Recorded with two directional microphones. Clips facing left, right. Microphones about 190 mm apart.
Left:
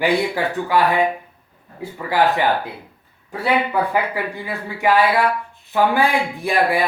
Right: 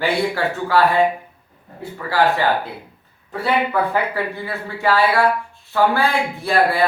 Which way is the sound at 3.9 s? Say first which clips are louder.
Even; 15° left (ahead or behind).